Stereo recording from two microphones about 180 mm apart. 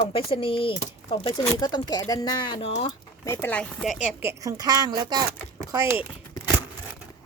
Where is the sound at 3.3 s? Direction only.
10° left (ahead or behind); by 6.1 s 15° right (ahead or behind).